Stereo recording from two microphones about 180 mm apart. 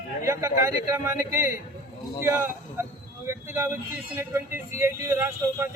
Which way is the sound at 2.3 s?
15° right (ahead or behind).